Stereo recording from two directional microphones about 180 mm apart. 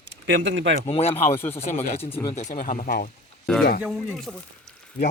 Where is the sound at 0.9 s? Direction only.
35° left (ahead or behind).